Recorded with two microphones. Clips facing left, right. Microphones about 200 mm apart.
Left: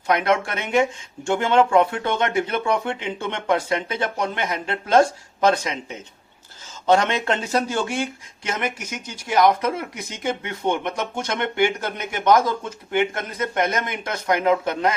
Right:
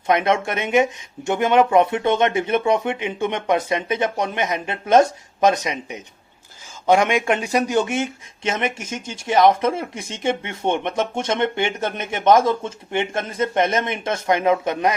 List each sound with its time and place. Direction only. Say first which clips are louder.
0.1 s speech: right 2 dB; 20° right (ahead or behind)